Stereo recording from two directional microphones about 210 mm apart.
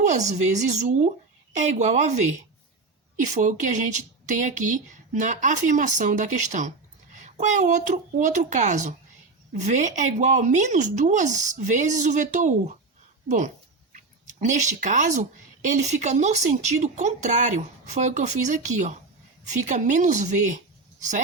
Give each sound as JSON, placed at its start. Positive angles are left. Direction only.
{"t": 0.0, "sound": "speech", "side_deg": -35}